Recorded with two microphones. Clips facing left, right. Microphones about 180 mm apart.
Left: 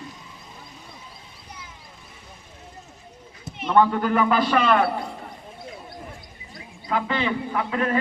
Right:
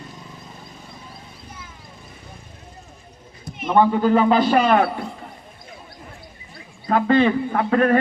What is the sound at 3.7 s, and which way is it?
A man's voice, 15° right (ahead or behind).